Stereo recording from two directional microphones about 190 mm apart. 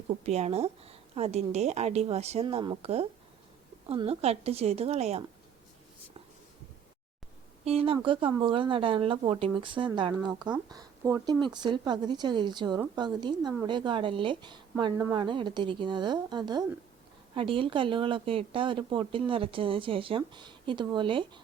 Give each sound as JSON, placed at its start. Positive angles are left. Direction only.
{"t": 0.3, "sound": "a woman's voice", "side_deg": -35}
{"t": 7.6, "sound": "a woman's voice", "side_deg": -30}